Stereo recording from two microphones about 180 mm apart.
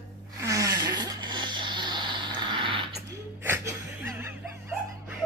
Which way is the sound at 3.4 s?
15° right (ahead or behind).